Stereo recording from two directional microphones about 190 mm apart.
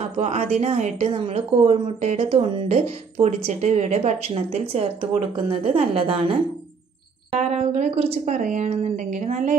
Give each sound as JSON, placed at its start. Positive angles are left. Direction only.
{"t": 0.0, "sound": "a woman's voice", "side_deg": -35}
{"t": 7.3, "sound": "a woman's voice", "side_deg": -35}